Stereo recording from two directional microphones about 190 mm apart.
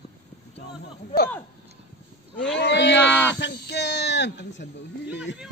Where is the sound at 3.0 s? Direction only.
10° left (ahead or behind).